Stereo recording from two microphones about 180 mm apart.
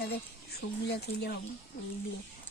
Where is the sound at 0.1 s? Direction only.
65° left (ahead or behind).